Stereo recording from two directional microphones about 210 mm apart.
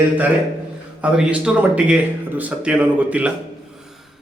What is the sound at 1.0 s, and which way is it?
A man's voice, 5° right (ahead or behind).